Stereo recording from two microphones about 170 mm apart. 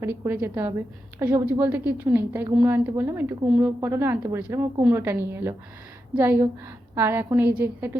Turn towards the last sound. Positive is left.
turn(degrees=-10)  # may be behind; listen again after turning